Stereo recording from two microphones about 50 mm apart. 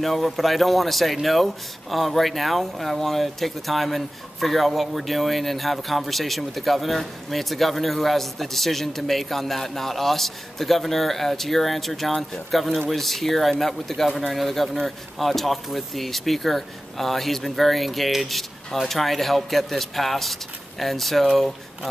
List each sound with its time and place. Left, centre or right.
0.0 s speech: centre